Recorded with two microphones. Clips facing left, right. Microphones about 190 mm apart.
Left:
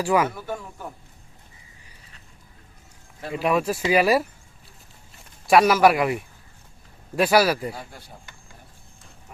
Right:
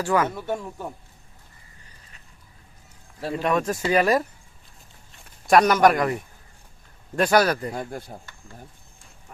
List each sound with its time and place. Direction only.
0.0 s speech: 10° left (ahead or behind)
0.3 s speech: 25° right (ahead or behind)
3.3 s speech: 5° left (ahead or behind)
7.2 s speech: 5° left (ahead or behind)
7.7 s speech: 50° right (ahead or behind)